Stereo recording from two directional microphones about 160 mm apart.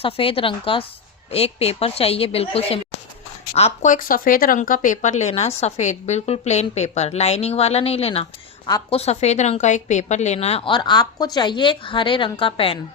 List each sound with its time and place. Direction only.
0.0 s a woman's voice: 35° left (ahead or behind)
3.9 s a woman's voice: 60° left (ahead or behind); by 12.8 s 35° left (ahead or behind)